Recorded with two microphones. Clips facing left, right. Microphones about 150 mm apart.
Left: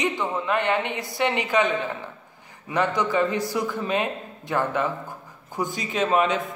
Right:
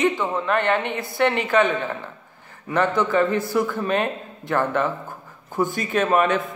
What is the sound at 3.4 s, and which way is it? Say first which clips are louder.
Speech: right 4 dB; 55° right (ahead or behind).